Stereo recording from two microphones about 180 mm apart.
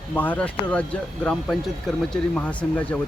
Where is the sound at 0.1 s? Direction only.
10° left (ahead or behind).